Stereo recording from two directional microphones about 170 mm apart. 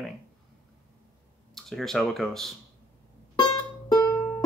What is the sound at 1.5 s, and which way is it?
Speech, centre (ahead or behind).